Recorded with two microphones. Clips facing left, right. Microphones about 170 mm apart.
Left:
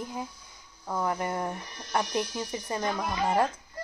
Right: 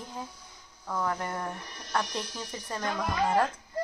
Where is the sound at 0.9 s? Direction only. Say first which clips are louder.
Left 2 dB; 15° left (ahead or behind).